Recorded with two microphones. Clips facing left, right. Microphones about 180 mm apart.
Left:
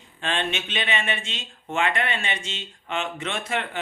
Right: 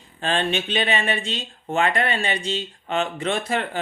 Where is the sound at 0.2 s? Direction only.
35° right (ahead or behind).